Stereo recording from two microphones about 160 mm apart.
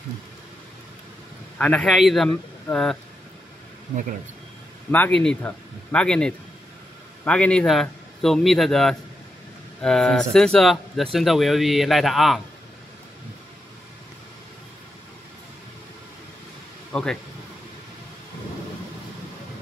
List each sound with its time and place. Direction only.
1.6 s speech: 10° left (ahead or behind)
4.9 s speech: 5° left (ahead or behind)
16.9 s speech: 5° left (ahead or behind)